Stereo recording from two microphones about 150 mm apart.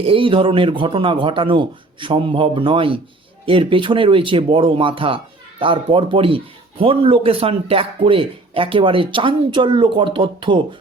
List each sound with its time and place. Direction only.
0.0 s speech: 35° right (ahead or behind)